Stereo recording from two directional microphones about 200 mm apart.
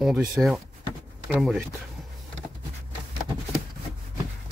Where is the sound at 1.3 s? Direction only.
Centre (ahead or behind).